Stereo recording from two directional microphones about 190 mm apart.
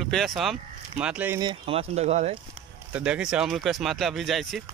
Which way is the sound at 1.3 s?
25° right (ahead or behind).